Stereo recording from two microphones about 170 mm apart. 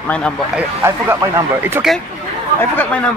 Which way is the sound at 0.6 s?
15° right (ahead or behind).